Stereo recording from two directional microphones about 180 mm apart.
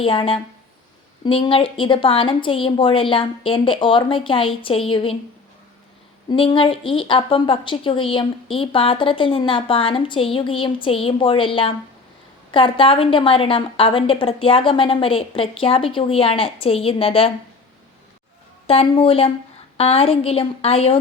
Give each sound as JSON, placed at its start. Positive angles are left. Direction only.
{"t": 0.0, "sound": "a woman's voice", "side_deg": 30}
{"t": 6.3, "sound": "a woman's voice", "side_deg": 30}
{"t": 18.7, "sound": "a woman's voice", "side_deg": 30}